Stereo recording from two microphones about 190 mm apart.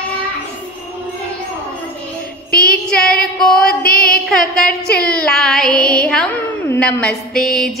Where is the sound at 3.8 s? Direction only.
50° left (ahead or behind).